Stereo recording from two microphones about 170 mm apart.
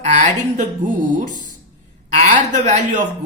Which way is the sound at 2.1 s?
45° right (ahead or behind).